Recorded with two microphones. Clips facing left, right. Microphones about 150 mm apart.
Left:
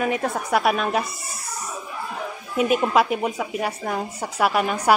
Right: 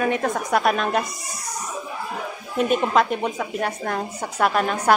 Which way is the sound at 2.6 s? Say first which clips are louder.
Even; 5° left (ahead or behind).